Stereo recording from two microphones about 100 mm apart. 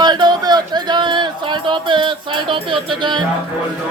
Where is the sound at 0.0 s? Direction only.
45° right (ahead or behind).